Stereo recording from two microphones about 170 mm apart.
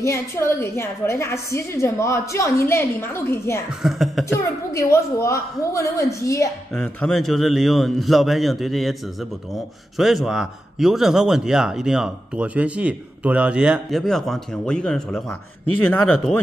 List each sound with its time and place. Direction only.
0.0 s a woman's voice: 15° left (ahead or behind)
3.8 s speech: centre (ahead or behind)
4.3 s a woman's voice: 15° left (ahead or behind)
6.7 s speech: 5° left (ahead or behind)
9.9 s a woman's voice: centre (ahead or behind)